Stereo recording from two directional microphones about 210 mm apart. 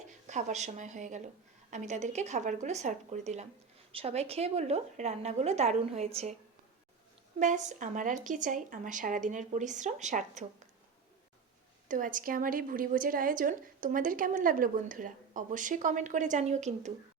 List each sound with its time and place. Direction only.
0.3 s a woman's voice: 35° right (ahead or behind)
7.3 s a woman's voice: 35° right (ahead or behind)
11.9 s a woman's voice: 40° right (ahead or behind)